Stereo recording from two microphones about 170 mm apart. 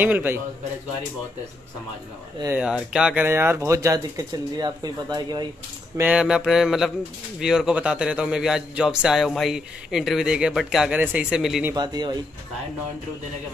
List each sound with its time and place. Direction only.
0.0 s speech: 10° right (ahead or behind)
2.4 s speech: 10° right (ahead or behind); by 5.5 s 25° right (ahead or behind)
5.9 s a man's voice: 5° right (ahead or behind)
11.7 s speech: 25° right (ahead or behind)